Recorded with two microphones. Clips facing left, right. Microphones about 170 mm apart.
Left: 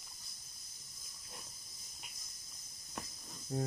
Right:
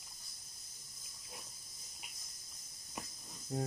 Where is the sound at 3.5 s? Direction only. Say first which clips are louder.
Left 1 dB; 20° right (ahead or behind).